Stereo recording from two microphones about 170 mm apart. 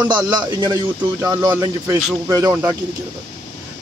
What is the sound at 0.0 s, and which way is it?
A man's voice, 25° right (ahead or behind).